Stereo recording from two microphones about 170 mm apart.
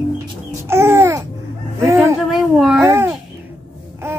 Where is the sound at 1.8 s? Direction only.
15° right (ahead or behind).